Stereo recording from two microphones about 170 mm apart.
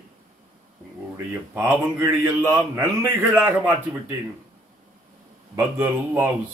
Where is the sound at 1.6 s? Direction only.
15° right (ahead or behind).